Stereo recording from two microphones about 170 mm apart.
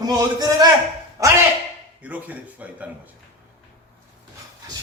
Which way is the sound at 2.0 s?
10° right (ahead or behind).